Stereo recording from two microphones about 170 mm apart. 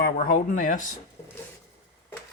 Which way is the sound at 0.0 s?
55° left (ahead or behind).